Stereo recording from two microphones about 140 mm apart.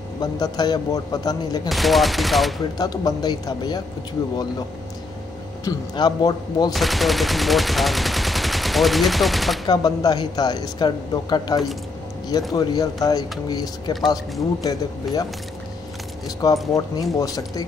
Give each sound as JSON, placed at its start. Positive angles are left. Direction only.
{"t": 0.2, "sound": "speech", "side_deg": 30}
{"t": 1.7, "sound": "gunshot", "side_deg": 0}
{"t": 2.8, "sound": "speech", "side_deg": 30}
{"t": 5.7, "sound": "speech", "side_deg": 30}
{"t": 6.7, "sound": "speech", "side_deg": 0}
{"t": 9.7, "sound": "speech", "side_deg": 30}
{"t": 16.3, "sound": "speech", "side_deg": 25}